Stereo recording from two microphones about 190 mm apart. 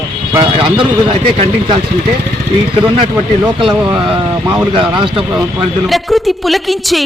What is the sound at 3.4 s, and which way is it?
Speech, 25° right (ahead or behind).